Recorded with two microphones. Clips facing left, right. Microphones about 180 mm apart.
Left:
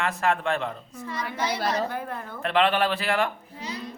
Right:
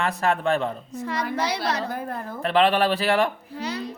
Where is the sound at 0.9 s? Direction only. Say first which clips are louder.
Right 5 dB; 70° right (ahead or behind).